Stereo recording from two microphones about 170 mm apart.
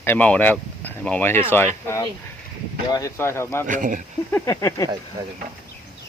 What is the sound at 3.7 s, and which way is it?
Speech, 50° right (ahead or behind).